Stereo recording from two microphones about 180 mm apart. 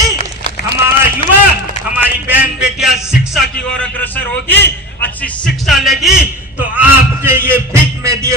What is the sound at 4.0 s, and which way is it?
A man's voice, 10° left (ahead or behind).